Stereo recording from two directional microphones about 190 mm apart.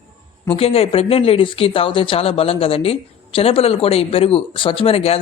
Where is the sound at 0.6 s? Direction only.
30° left (ahead or behind).